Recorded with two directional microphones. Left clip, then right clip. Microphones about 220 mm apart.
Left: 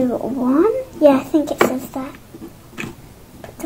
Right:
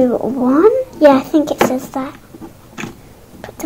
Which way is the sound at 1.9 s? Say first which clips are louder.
Right 5 dB; 35° right (ahead or behind).